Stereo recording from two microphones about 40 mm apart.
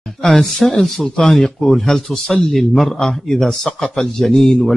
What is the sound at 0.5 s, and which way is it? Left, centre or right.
A man's voice, centre.